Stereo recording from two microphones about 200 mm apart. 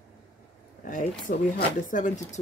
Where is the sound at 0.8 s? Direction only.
40° left (ahead or behind).